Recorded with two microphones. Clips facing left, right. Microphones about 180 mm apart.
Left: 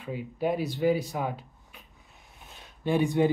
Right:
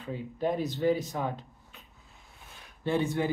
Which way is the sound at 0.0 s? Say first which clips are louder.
Left 1 dB; 10° left (ahead or behind).